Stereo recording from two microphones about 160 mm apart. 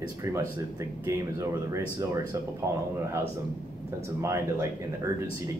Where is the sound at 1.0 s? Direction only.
20° right (ahead or behind).